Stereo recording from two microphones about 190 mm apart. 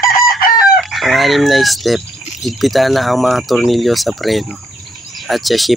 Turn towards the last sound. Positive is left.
turn(degrees=0)  # may be behind; listen again after turning